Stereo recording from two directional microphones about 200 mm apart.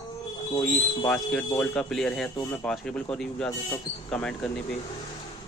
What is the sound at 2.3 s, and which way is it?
Speech, 20° left (ahead or behind).